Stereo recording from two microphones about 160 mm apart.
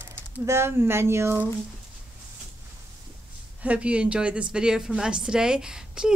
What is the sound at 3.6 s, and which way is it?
Speech, 10° right (ahead or behind).